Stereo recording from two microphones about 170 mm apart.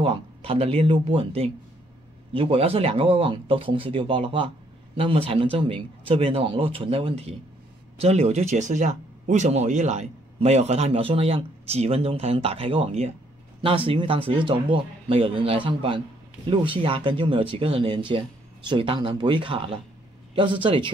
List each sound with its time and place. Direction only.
0.0 s speech: 35° right (ahead or behind)